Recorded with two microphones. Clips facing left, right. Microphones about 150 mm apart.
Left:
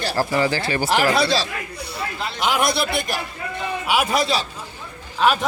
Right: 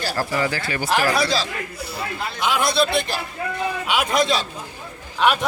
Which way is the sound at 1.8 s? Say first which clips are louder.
Left 1 dB; centre (ahead or behind).